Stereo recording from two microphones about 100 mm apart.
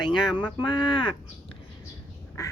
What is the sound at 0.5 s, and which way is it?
Speech, 50° left (ahead or behind).